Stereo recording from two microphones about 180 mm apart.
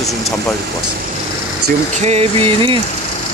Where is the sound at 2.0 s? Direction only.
35° right (ahead or behind).